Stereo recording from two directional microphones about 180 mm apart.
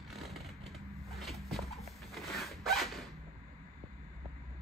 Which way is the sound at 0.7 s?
Centre (ahead or behind).